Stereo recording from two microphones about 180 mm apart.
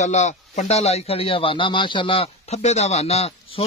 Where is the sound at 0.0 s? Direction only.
40° left (ahead or behind).